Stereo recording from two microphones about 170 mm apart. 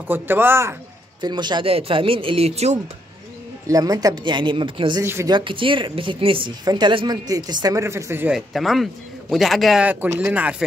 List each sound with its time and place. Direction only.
0.1 s speech: 15° right (ahead or behind)
1.2 s speech: 25° right (ahead or behind)
3.6 s a woman's voice: 20° right (ahead or behind)
5.0 s speech: 15° right (ahead or behind)
5.3 s a woman's voice: 30° right (ahead or behind)
8.3 s a man's voice: centre (ahead or behind)